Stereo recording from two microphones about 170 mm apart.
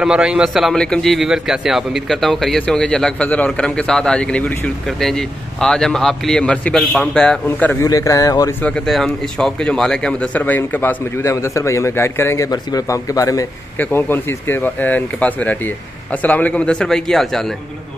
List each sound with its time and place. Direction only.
0.0 s speech: 5° right (ahead or behind)
5.6 s speech: 5° left (ahead or behind)
7.8 s a man's voice: 20° left (ahead or behind)
8.6 s speech: centre (ahead or behind)